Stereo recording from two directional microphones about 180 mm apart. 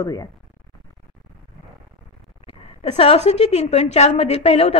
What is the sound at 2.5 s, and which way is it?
A woman's voice, 35° left (ahead or behind).